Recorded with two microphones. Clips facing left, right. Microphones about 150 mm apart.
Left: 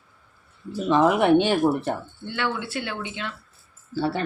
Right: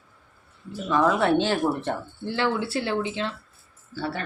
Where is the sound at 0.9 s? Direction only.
20° left (ahead or behind).